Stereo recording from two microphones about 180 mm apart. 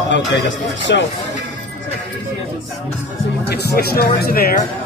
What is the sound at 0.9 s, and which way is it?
Speech, 85° left.